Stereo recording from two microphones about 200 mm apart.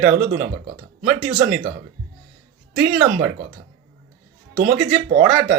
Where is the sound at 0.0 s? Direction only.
40° right (ahead or behind).